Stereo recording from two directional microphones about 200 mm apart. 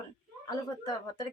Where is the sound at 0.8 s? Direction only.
20° left (ahead or behind).